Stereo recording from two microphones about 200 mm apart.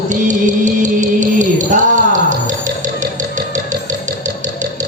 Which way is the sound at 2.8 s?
40° right (ahead or behind).